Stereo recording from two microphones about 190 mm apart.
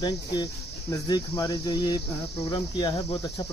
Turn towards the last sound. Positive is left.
turn(degrees=20)  # may be behind; listen again after turning